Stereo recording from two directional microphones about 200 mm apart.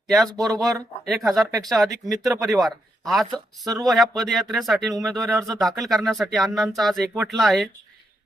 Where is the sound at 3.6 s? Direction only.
20° right (ahead or behind).